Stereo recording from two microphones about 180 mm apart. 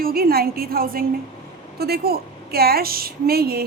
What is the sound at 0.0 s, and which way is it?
A woman's voice, 55° right (ahead or behind).